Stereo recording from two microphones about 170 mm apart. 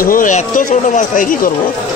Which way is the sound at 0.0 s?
55° left (ahead or behind).